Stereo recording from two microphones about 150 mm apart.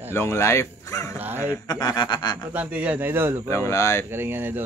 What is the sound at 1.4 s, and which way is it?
Speech, 20° left (ahead or behind).